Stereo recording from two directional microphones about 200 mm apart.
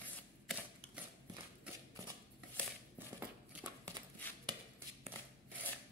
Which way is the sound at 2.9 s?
10° right (ahead or behind).